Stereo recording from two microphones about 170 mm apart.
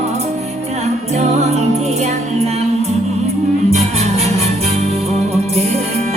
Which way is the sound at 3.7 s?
40° right (ahead or behind).